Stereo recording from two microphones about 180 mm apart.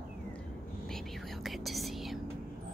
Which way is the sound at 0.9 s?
Centre (ahead or behind).